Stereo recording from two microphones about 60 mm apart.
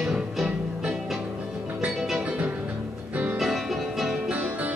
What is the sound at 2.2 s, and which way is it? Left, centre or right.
Music, right.